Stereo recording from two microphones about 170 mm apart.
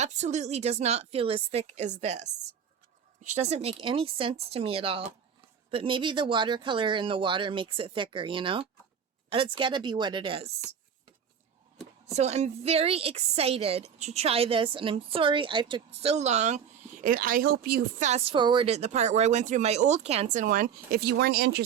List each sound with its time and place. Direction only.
0.0 s a woman's voice: 45° right (ahead or behind)
12.1 s a woman's voice: 40° right (ahead or behind)
17.0 s speech: 55° right (ahead or behind)
18.0 s speech: 40° right (ahead or behind); by 21.6 s 75° right (ahead or behind)